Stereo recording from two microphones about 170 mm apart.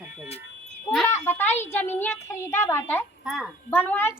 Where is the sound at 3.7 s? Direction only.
10° left (ahead or behind).